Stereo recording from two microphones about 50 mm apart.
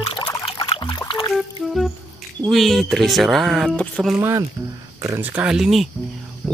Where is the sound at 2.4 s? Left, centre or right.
Centre.